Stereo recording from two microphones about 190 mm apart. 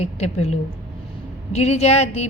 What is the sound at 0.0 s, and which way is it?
A woman's voice, 35° left (ahead or behind).